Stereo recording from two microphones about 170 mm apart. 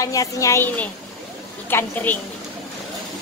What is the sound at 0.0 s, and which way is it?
A woman's voice, 20° left (ahead or behind).